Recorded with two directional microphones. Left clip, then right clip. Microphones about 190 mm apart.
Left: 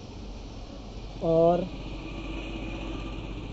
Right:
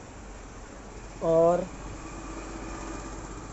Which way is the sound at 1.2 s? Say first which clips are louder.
Even; 20° right (ahead or behind).